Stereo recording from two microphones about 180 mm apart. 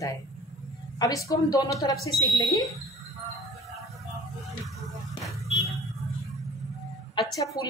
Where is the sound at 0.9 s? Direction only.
20° left (ahead or behind).